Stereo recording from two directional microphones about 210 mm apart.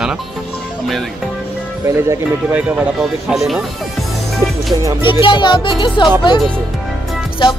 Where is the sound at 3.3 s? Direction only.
Centre (ahead or behind).